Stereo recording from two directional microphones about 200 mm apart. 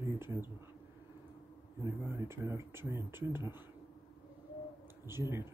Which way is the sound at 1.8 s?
15° right (ahead or behind).